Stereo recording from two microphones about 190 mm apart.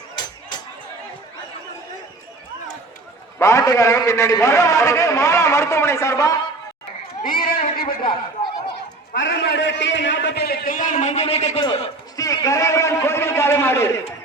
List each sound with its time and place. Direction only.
3.3 s a man's voice: 15° left (ahead or behind)
7.2 s a sound: 50° left (ahead or behind)
9.1 s a man's voice: 70° left (ahead or behind); by 13.9 s 10° left (ahead or behind)